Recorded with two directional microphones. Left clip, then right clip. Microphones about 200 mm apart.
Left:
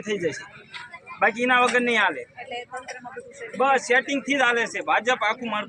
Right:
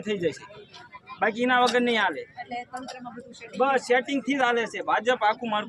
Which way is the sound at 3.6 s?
15° right (ahead or behind).